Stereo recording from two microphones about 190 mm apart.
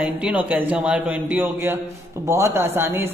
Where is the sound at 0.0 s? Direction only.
5° right (ahead or behind).